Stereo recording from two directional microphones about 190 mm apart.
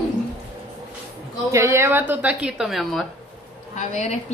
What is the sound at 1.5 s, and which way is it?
Speech, 15° right (ahead or behind).